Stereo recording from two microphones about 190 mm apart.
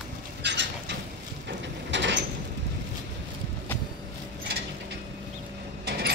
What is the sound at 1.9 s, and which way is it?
Sliding door, 70° right (ahead or behind).